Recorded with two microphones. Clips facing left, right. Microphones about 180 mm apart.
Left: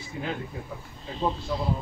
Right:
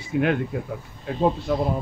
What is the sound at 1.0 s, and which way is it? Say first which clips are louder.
Speech: right 7 dB; 55° right (ahead or behind).